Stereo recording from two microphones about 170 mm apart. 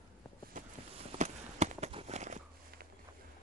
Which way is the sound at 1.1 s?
40° right (ahead or behind).